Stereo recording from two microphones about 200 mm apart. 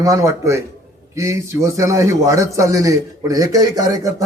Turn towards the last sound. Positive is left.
turn(degrees=-15)  # may be behind; listen again after turning